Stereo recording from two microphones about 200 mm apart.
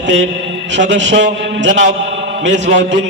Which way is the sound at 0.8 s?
65° right (ahead or behind).